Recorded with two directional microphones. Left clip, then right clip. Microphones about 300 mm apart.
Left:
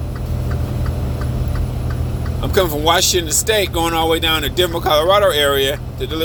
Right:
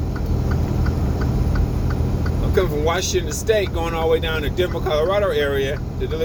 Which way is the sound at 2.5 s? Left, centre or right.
Left.